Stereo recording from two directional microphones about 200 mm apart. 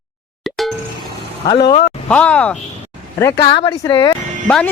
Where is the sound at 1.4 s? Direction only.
20° left (ahead or behind).